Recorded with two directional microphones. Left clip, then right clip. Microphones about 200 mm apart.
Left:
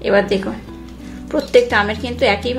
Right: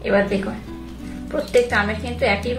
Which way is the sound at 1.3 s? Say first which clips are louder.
Left 5 dB; 45° left (ahead or behind).